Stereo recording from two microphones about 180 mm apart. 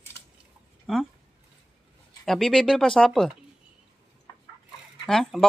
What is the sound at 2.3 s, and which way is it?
Speech, centre (ahead or behind).